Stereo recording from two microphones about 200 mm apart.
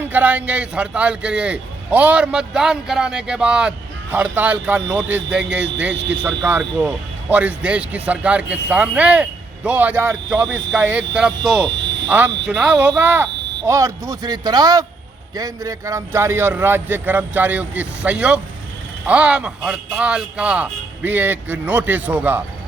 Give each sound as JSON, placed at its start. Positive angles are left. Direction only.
{"t": 0.0, "sound": "speech", "side_deg": -10}
{"t": 5.9, "sound": "speech", "side_deg": -60}
{"t": 6.2, "sound": "a man's voice", "side_deg": -10}